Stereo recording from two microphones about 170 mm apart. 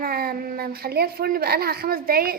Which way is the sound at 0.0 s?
60° right (ahead or behind).